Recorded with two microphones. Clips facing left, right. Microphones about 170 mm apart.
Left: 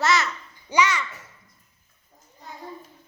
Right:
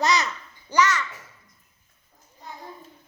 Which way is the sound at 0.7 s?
10° left (ahead or behind).